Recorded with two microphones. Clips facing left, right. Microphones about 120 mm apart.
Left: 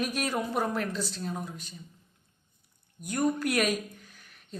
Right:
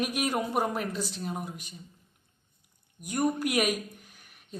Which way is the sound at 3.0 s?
15° right (ahead or behind).